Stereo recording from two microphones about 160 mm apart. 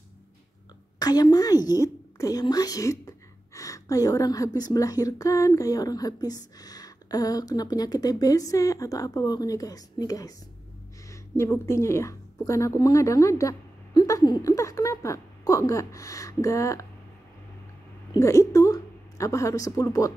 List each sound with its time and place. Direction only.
0.9 s a woman's voice: 25° left (ahead or behind)
18.1 s a woman's voice: 20° left (ahead or behind)